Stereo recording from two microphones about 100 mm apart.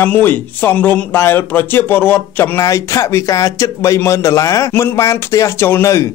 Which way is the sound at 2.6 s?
30° left (ahead or behind).